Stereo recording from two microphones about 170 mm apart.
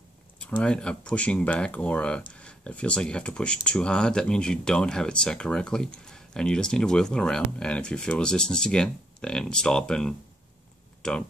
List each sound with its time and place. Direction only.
0.5 s speech: 5° left (ahead or behind)